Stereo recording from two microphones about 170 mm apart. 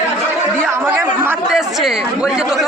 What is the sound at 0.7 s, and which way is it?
Speech, 15° right (ahead or behind).